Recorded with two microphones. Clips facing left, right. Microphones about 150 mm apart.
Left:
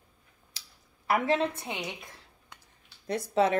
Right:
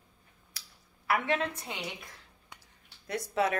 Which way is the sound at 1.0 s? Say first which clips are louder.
Left 3 dB; 40° left (ahead or behind).